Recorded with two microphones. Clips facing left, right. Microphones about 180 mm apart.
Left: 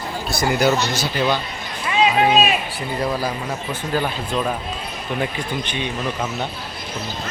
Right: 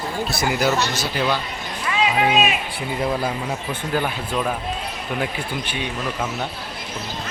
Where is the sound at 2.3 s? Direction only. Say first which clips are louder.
Left 2 dB; 35° left (ahead or behind).